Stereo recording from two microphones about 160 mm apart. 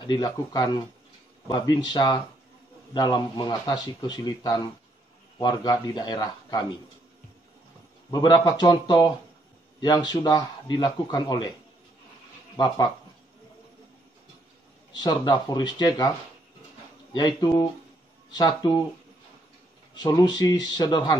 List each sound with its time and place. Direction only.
0.0 s a man's voice: 25° left (ahead or behind)
8.1 s a man's voice: 25° left (ahead or behind)
12.5 s a man's voice: 25° left (ahead or behind)
15.0 s a man's voice: 25° left (ahead or behind)
17.1 s a man's voice: 25° left (ahead or behind)
20.0 s a man's voice: 25° left (ahead or behind)